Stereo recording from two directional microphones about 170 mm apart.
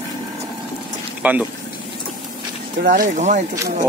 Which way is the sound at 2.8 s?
55° right (ahead or behind).